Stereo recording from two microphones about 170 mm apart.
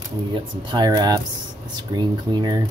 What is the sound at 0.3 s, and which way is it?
Speech, 25° right (ahead or behind).